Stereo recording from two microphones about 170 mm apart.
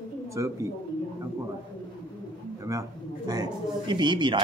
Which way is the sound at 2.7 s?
15° right (ahead or behind).